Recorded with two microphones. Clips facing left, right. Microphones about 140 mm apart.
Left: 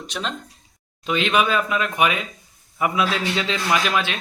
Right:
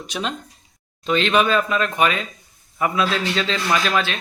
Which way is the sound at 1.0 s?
10° left (ahead or behind).